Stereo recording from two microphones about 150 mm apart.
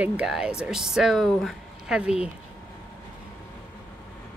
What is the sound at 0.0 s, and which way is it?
Speech, 5° right (ahead or behind).